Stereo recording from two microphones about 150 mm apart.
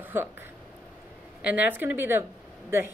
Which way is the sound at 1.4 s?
10° right (ahead or behind).